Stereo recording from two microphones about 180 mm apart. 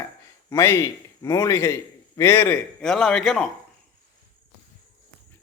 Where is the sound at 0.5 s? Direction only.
15° left (ahead or behind).